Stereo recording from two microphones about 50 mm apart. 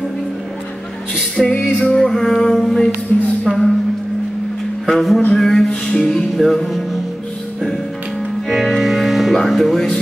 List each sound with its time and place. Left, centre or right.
1.4 s music: centre
3.1 s speech: left
3.4 s speech: centre
4.8 s a man's voice: centre
5.3 s music: centre
8.5 s music: centre
9.5 s speech: centre